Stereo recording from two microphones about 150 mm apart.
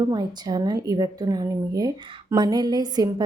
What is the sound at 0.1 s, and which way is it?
A woman's voice, 25° right (ahead or behind).